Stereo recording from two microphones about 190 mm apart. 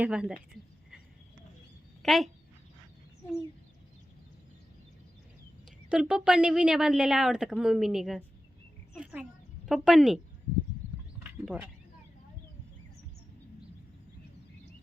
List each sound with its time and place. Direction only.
0.0 s speech: 5° right (ahead or behind)
0.6 s speech: 25° right (ahead or behind)
2.0 s speech: centre (ahead or behind)
5.9 s speech: 5° right (ahead or behind)
9.0 s a sound: 5° right (ahead or behind)
9.6 s speech: centre (ahead or behind)
11.2 s a sound: 5° right (ahead or behind)